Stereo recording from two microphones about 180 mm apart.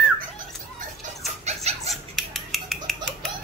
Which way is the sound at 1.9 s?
Centre (ahead or behind).